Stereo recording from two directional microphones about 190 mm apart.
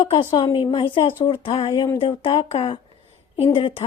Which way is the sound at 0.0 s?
30° left (ahead or behind).